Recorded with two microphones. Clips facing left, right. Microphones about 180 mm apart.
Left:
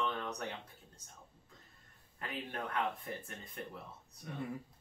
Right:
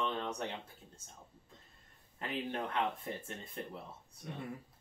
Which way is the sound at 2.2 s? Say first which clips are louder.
Right 4 dB; 25° right (ahead or behind).